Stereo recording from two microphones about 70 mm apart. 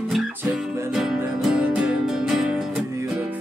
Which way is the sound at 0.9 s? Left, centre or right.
Centre.